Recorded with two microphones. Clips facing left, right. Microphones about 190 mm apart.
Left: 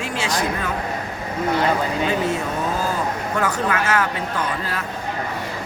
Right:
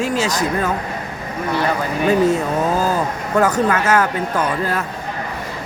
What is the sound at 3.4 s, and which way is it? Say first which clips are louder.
Speech: right 5 dB; 40° right (ahead or behind).